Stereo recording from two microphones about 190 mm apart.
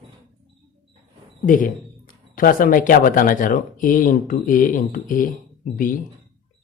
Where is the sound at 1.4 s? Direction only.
45° left (ahead or behind).